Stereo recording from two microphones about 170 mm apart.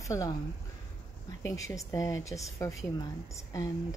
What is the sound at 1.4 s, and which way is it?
A woman's voice, 20° left (ahead or behind).